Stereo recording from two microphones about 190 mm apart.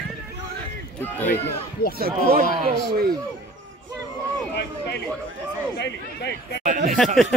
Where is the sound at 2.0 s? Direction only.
50° right (ahead or behind).